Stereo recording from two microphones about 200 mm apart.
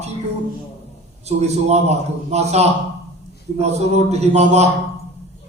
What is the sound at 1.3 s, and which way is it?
A man's voice, 35° right (ahead or behind).